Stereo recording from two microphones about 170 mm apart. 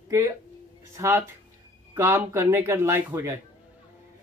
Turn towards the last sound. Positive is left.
turn(degrees=-15)  # may be behind; listen again after turning